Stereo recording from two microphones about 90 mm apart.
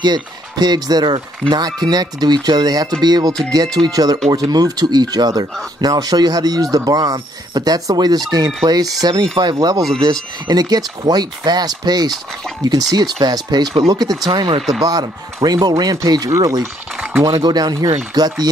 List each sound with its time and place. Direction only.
0.0 s speech: 50° right (ahead or behind)
9.0 s speech: 60° right (ahead or behind)
14.8 s speech: 45° right (ahead or behind)
17.2 s speech: 50° right (ahead or behind)